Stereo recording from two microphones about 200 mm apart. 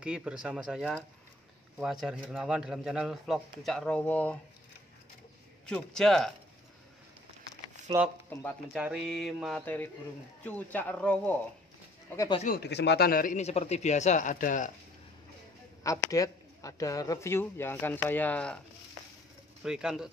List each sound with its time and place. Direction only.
0.0 s speech: 5° right (ahead or behind)
5.7 s speech: 5° left (ahead or behind)
8.3 s speech: 10° left (ahead or behind)
8.7 s speech: 5° right (ahead or behind)
12.4 s speech: 55° left (ahead or behind)
15.8 s speech: 15° left (ahead or behind)
19.6 s speech: 5° right (ahead or behind)